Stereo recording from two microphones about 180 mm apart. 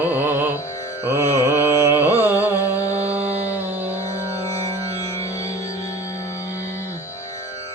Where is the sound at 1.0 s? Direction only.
15° right (ahead or behind).